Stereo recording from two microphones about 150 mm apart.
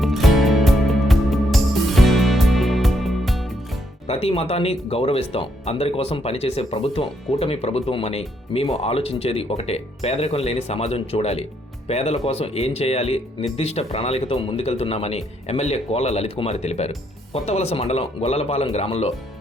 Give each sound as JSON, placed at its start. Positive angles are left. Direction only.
{"t": 0.0, "sound": "music", "side_deg": 0}
{"t": 4.0, "sound": "speech", "side_deg": 45}